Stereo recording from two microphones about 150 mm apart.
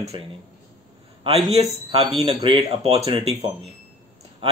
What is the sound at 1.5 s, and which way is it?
Speech, 45° right (ahead or behind).